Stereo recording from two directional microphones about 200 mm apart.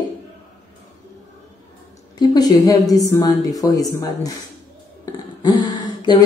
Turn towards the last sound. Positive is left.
turn(degrees=20)  # may be behind; listen again after turning